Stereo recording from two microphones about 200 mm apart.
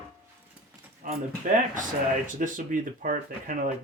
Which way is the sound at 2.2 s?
40° right (ahead or behind).